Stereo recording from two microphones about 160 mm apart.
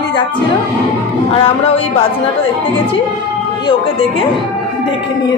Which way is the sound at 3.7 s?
35° left (ahead or behind).